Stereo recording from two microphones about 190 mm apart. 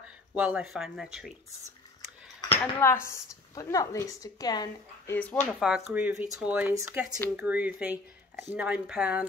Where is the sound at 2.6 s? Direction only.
15° left (ahead or behind).